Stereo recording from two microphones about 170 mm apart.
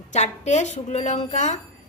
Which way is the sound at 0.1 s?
45° left (ahead or behind).